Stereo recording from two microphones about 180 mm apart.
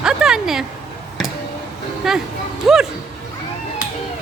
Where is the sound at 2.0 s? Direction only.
Centre (ahead or behind).